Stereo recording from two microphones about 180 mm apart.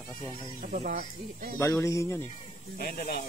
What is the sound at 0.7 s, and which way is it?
Speech, 50° right (ahead or behind).